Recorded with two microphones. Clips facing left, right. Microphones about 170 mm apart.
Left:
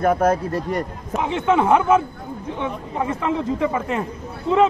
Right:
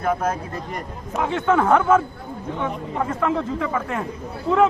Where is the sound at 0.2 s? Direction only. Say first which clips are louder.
Left 6 dB; 40° left (ahead or behind).